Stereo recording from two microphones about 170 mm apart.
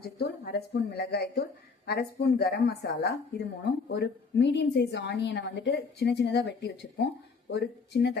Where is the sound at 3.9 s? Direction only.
90° left.